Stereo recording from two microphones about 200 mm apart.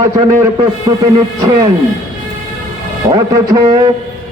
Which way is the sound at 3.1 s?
20° right (ahead or behind).